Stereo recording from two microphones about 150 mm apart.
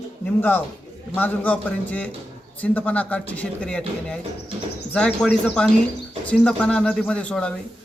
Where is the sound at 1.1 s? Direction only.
10° left (ahead or behind).